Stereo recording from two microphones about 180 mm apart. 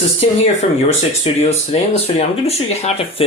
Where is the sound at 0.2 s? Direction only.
35° left (ahead or behind).